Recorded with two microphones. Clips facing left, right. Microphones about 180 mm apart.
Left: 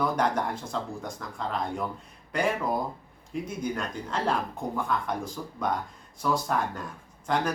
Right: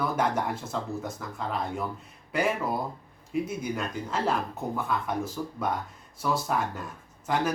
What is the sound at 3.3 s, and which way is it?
Speech, 5° right (ahead or behind).